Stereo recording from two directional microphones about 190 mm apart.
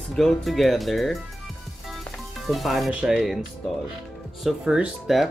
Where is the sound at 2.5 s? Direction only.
Centre (ahead or behind).